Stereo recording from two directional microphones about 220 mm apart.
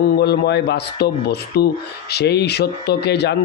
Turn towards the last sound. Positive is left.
turn(degrees=50)  # may be behind; listen again after turning